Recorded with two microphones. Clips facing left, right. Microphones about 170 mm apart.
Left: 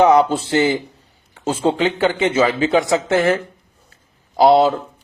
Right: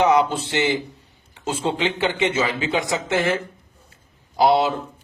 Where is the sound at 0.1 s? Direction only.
40° left (ahead or behind).